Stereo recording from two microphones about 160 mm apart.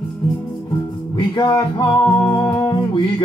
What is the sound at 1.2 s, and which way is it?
Music, 25° left (ahead or behind).